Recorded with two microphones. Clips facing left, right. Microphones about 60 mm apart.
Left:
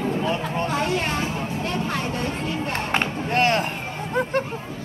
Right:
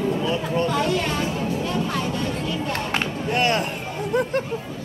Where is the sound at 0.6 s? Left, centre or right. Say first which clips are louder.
Right 2 dB; left.